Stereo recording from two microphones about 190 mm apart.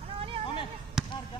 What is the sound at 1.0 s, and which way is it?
Basketball bounce, centre (ahead or behind).